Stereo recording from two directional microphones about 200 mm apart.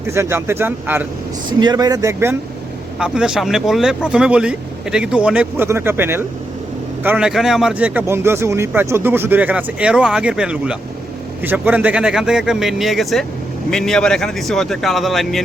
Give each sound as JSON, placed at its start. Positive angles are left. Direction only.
{"t": 0.1, "sound": "a man's voice", "side_deg": -15}
{"t": 1.5, "sound": "a man's voice", "side_deg": -20}